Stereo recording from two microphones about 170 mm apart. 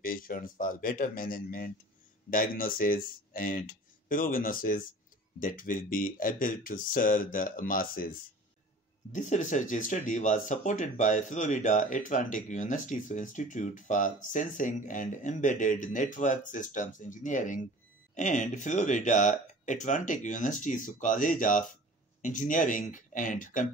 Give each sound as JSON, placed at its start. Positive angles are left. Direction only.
{"t": 0.0, "sound": "speech", "side_deg": 55}
{"t": 9.1, "sound": "speech", "side_deg": 45}